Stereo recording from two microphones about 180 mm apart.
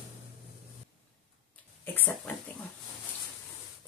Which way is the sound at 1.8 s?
10° left (ahead or behind).